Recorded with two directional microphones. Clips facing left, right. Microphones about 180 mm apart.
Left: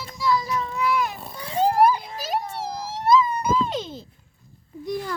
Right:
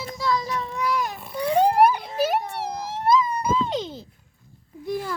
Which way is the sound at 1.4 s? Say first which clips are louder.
Right 2 dB; 60° right (ahead or behind).